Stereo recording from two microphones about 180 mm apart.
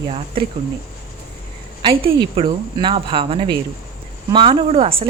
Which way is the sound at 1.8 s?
30° right (ahead or behind).